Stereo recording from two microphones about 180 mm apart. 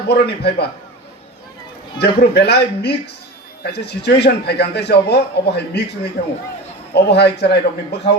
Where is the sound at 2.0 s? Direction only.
65° left (ahead or behind).